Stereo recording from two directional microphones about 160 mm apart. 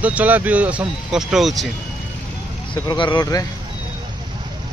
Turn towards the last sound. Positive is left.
turn(degrees=25)  # may be behind; listen again after turning